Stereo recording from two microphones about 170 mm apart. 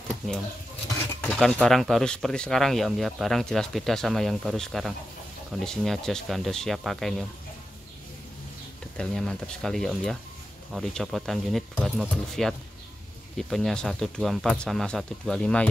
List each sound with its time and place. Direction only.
1.2 s speech: 5° left (ahead or behind)
8.9 s speech: 5° left (ahead or behind)